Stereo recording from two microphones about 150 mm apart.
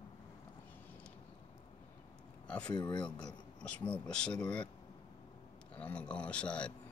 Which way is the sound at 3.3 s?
5° left (ahead or behind).